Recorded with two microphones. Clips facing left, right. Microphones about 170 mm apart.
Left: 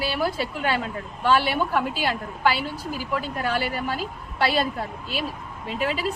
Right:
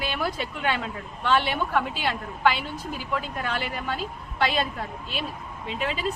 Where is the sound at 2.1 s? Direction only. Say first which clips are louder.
Even; 40° left (ahead or behind).